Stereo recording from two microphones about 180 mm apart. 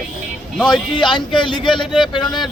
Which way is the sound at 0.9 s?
25° left (ahead or behind).